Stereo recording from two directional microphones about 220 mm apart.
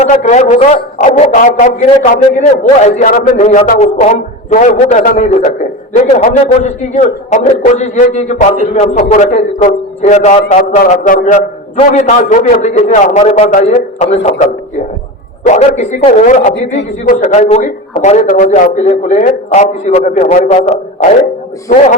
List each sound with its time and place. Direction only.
0.0 s a man's voice: 35° left (ahead or behind)
15.4 s a man's voice: 30° left (ahead or behind)